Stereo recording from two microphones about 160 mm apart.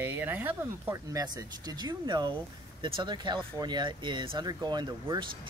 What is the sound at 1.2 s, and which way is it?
Speech, 25° right (ahead or behind).